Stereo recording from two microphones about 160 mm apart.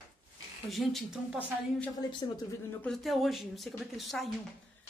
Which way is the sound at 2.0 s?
25° left (ahead or behind).